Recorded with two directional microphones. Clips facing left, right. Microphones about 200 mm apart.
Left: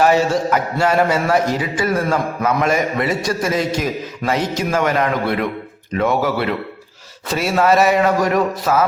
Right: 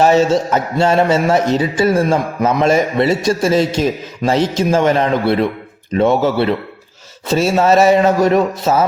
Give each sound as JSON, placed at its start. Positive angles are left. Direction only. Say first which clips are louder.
{"t": 0.0, "sound": "a man's voice", "louder": "right 3 dB", "side_deg": -25}